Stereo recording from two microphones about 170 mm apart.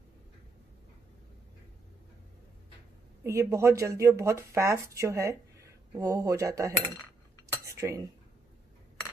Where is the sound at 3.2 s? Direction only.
15° right (ahead or behind).